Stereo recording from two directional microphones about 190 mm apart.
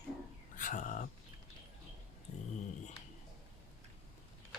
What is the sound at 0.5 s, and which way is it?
Speech, 45° left (ahead or behind).